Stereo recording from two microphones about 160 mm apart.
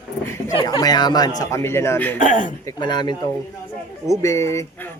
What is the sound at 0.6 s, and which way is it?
Speech, 25° left (ahead or behind).